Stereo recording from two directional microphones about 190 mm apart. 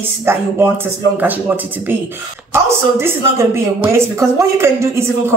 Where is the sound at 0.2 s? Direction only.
10° right (ahead or behind).